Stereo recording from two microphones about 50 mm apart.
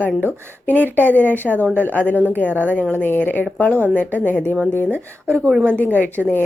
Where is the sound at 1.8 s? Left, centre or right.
Left.